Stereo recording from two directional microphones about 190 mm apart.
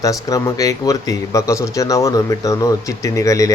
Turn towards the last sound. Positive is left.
turn(degrees=15)  # may be behind; listen again after turning